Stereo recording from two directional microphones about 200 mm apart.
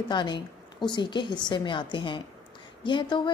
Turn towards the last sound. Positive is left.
turn(degrees=25)  # may be behind; listen again after turning